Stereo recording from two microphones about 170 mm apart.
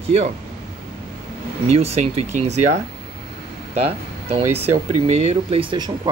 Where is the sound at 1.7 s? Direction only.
40° right (ahead or behind).